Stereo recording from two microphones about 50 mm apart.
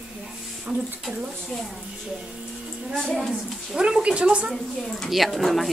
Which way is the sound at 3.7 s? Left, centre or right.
Centre.